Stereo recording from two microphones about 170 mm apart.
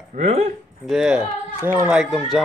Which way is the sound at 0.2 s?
40° right (ahead or behind).